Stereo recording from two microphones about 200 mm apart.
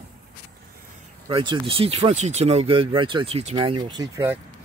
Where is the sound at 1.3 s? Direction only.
25° right (ahead or behind).